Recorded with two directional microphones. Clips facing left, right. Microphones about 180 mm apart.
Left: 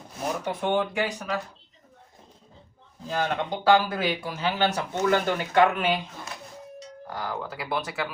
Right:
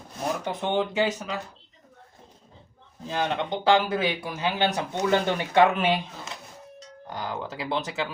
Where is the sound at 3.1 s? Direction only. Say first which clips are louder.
Even; 20° right (ahead or behind).